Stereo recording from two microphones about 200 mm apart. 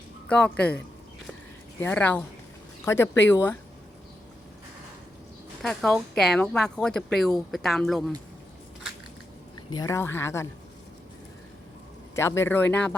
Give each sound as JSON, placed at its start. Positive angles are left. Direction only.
{"t": 0.3, "sound": "a woman's voice", "side_deg": 5}
{"t": 1.8, "sound": "speech", "side_deg": 10}
{"t": 5.6, "sound": "a woman's voice", "side_deg": 0}
{"t": 9.7, "sound": "speech", "side_deg": 15}
{"t": 12.1, "sound": "speech", "side_deg": 15}